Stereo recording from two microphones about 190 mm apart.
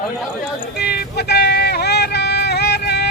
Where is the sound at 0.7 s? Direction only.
55° left (ahead or behind).